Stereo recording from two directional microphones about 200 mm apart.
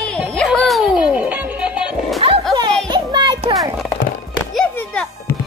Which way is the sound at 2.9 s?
20° right (ahead or behind).